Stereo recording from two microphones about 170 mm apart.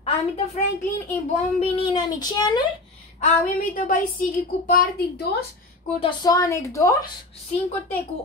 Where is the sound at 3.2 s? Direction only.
50° left (ahead or behind); by 5.3 s 70° left (ahead or behind).